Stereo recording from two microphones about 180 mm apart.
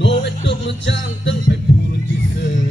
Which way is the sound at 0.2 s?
75° left (ahead or behind).